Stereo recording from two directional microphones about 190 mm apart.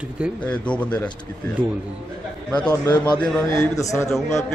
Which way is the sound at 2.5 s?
5° left (ahead or behind).